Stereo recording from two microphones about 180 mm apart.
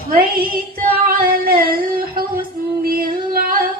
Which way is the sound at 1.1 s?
55° right (ahead or behind).